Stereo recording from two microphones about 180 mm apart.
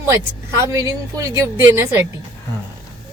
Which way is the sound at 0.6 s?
15° right (ahead or behind).